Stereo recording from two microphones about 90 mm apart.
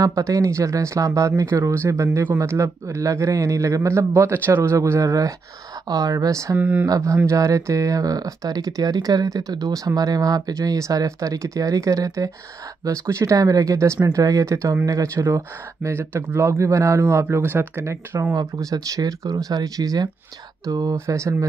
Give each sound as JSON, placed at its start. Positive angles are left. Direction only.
{"t": 0.0, "sound": "speech", "side_deg": -40}
{"t": 6.5, "sound": "speech", "side_deg": -20}
{"t": 7.2, "sound": "speech", "side_deg": -35}
{"t": 15.9, "sound": "speech", "side_deg": -25}
{"t": 18.3, "sound": "speech", "side_deg": -40}